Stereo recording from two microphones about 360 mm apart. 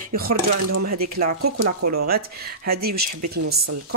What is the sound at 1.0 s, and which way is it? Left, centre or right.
Speech, right.